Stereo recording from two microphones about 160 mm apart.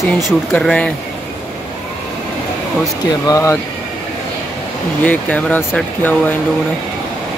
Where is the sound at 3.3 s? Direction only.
20° left (ahead or behind).